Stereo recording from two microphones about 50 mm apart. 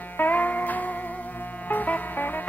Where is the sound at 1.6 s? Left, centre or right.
Left.